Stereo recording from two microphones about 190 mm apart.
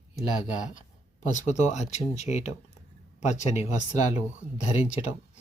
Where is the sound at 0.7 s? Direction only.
40° left (ahead or behind).